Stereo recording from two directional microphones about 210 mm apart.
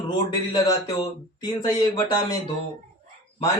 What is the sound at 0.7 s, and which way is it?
Speech, 15° left (ahead or behind).